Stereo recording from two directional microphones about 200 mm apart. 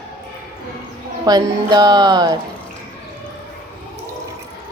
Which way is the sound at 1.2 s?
20° right (ahead or behind).